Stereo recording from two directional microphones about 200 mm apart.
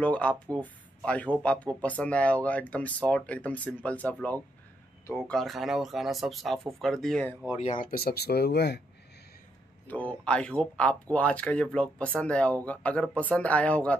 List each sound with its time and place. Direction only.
0.0 s speech: 5° left (ahead or behind)
7.5 s speech: 35° left (ahead or behind); by 8.8 s 55° left (ahead or behind)
9.8 s speech: 5° left (ahead or behind)